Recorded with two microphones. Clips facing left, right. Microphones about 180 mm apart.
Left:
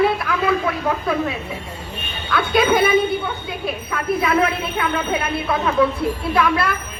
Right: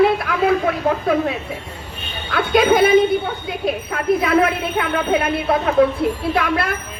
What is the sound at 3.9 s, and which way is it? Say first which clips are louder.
Speech: right 2 dB; 50° right (ahead or behind).